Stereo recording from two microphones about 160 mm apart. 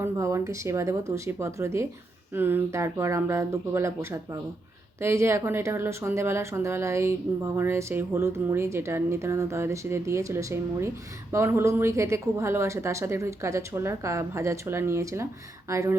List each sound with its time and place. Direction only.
0.0 s speech: 20° right (ahead or behind)